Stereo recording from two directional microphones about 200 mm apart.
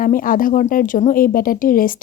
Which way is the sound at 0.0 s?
45° left (ahead or behind).